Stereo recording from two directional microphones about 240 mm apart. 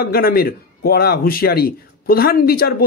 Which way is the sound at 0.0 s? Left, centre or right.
Left.